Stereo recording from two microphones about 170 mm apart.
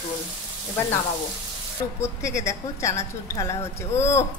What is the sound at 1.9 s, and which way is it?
A woman's voice, 15° left (ahead or behind).